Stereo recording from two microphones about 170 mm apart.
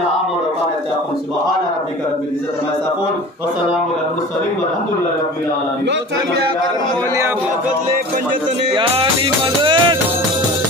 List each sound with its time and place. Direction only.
8.7 s music: 30° right (ahead or behind)